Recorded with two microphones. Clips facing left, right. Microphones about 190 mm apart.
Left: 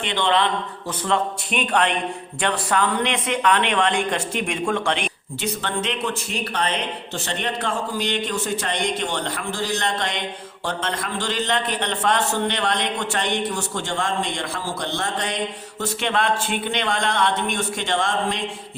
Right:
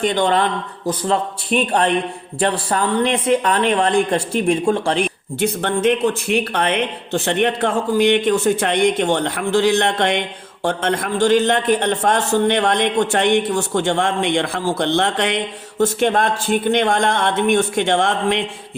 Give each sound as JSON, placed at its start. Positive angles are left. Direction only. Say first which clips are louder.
{"t": 0.0, "sound": "speech", "louder": "right 4 dB", "side_deg": -40}
{"t": 5.4, "sound": "speech", "louder": "right 8 dB", "side_deg": -50}
{"t": 15.8, "sound": "speech", "louder": "right 7 dB", "side_deg": -45}